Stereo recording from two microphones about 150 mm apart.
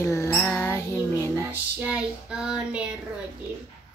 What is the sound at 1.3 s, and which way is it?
Child singing, 10° right (ahead or behind).